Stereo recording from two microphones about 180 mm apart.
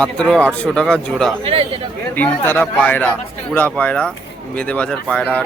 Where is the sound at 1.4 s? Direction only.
30° right (ahead or behind).